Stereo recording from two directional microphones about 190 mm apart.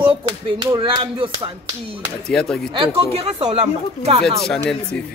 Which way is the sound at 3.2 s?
30° right (ahead or behind).